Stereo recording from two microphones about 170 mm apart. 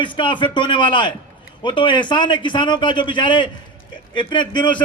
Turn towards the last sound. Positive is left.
turn(degrees=25)  # may be behind; listen again after turning